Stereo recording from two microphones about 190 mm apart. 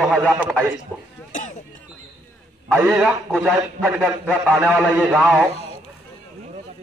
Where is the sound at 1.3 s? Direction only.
40° left (ahead or behind).